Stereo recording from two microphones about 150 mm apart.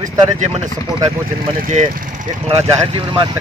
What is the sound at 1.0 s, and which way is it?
Speech, 45° right (ahead or behind).